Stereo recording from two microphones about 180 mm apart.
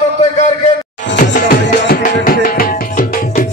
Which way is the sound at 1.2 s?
45° left (ahead or behind).